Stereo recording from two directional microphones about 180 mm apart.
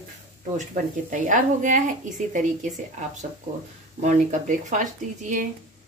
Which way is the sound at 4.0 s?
45° right (ahead or behind).